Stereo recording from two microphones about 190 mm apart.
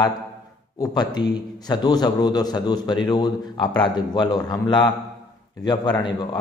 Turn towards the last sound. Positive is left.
turn(degrees=25)  # may be behind; listen again after turning